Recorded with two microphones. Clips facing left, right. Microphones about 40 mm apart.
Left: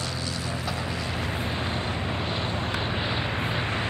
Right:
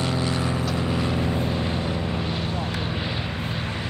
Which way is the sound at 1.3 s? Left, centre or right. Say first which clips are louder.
Right 4 dB; centre.